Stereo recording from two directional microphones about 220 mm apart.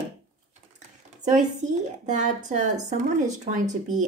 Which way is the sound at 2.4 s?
35° right (ahead or behind).